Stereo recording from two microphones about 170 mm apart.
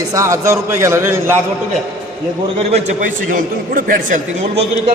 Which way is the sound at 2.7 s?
45° right (ahead or behind).